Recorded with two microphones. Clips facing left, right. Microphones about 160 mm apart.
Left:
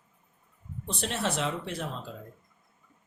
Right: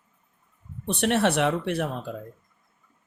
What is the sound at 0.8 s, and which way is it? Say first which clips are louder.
Speech: right 9 dB; 65° right (ahead or behind).